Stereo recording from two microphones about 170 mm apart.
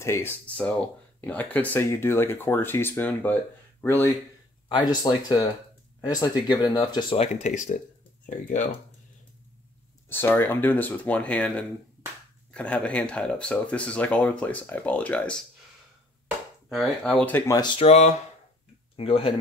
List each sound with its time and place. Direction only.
0.0 s speech: 15° left (ahead or behind)
4.6 s speech: 25° left (ahead or behind)
7.4 s speech: 45° left (ahead or behind)
10.0 s speech: 10° left (ahead or behind)
16.6 s speech: centre (ahead or behind)
17.5 s speech: 25° left (ahead or behind)
17.8 s speech: 40° left (ahead or behind)